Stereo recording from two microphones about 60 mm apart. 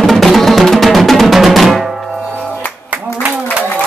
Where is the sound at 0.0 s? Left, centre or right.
Centre.